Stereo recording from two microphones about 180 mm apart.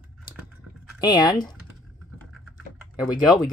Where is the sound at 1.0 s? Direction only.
20° left (ahead or behind).